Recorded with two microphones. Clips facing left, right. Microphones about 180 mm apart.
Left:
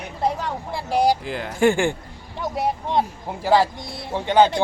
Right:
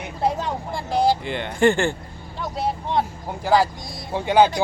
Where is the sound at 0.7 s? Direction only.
10° left (ahead or behind).